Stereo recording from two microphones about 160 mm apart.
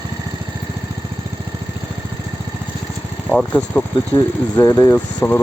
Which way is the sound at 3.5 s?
15° left (ahead or behind).